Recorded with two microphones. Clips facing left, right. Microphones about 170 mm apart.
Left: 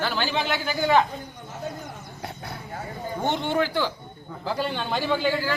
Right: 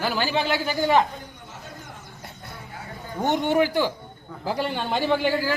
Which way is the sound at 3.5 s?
15° right (ahead or behind).